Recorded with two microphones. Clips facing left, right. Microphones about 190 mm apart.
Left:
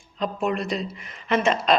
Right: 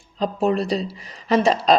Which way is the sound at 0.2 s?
35° right (ahead or behind).